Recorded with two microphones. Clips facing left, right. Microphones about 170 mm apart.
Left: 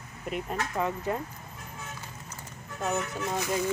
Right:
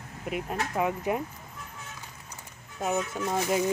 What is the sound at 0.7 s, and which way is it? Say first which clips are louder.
Speech: right 3 dB; 15° right (ahead or behind).